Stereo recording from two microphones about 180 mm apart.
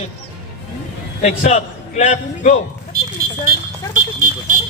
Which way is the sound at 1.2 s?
45° left (ahead or behind).